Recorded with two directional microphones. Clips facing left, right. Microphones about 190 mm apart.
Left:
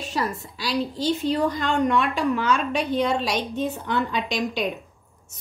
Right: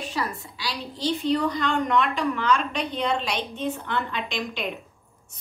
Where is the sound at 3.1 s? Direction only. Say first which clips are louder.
Left 2 dB; 40° left (ahead or behind).